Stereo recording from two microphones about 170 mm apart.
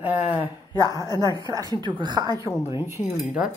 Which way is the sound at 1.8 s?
25° right (ahead or behind).